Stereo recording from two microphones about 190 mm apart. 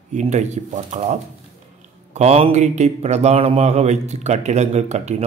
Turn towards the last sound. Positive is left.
turn(degrees=-35)  # may be behind; listen again after turning